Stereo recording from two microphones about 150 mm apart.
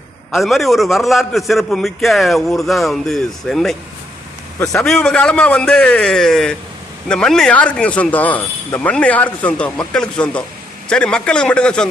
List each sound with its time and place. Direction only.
0.3 s a man's voice: centre (ahead or behind)
4.8 s a man's voice: 5° left (ahead or behind)